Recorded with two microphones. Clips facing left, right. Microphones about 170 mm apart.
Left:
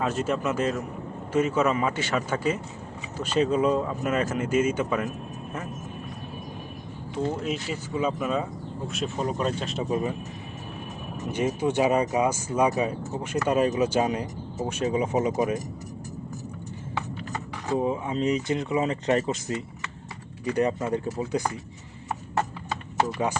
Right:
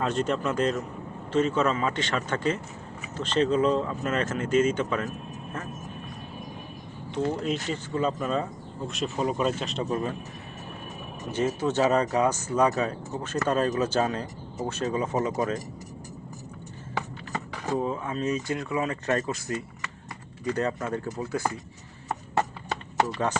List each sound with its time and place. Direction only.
0.0 s speech: 5° left (ahead or behind)
7.3 s speech: 5° left (ahead or behind)
9.9 s speech: 15° left (ahead or behind)
11.3 s speech: 15° left (ahead or behind)
17.7 s speech: 15° left (ahead or behind)